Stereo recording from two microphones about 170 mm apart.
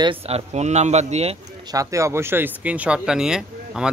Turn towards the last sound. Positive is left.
turn(degrees=-5)  # may be behind; listen again after turning